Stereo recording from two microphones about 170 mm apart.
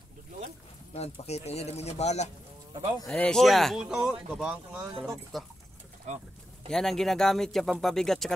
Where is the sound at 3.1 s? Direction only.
5° left (ahead or behind).